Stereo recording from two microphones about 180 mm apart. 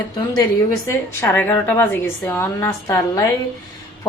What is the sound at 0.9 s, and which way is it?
A woman's voice, 10° left (ahead or behind).